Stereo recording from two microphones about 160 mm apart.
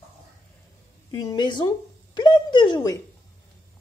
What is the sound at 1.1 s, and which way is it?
Speech, 25° left (ahead or behind).